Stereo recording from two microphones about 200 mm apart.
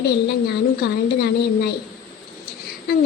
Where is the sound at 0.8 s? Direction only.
50° left (ahead or behind).